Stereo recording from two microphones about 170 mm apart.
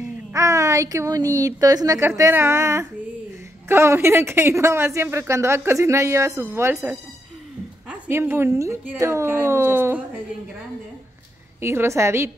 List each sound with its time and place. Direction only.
0.3 s speech: 20° right (ahead or behind)
8.1 s speech: 15° right (ahead or behind)
11.6 s speech: 15° right (ahead or behind)